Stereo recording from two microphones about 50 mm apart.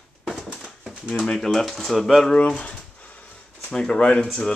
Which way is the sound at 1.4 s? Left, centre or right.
Centre.